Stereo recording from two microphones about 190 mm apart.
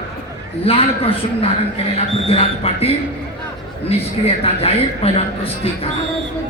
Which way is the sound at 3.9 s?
30° left (ahead or behind).